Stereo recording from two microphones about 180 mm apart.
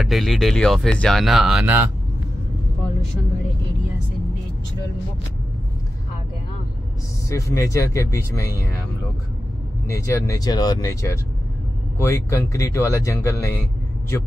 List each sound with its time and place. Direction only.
0.0 s speech: centre (ahead or behind)
7.2 s speech: 15° left (ahead or behind)
9.8 s speech: 15° left (ahead or behind)